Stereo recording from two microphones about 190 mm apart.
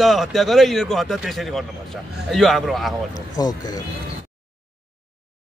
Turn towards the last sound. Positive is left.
turn(degrees=20)  # may be behind; listen again after turning